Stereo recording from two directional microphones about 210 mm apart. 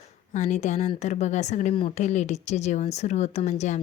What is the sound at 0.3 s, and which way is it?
A woman's voice, 35° left (ahead or behind).